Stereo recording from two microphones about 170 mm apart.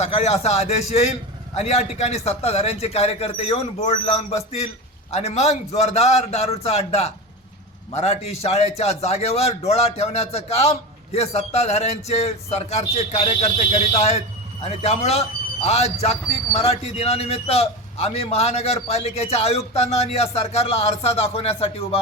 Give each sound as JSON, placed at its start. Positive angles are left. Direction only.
{"t": 0.0, "sound": "a man's voice", "side_deg": 40}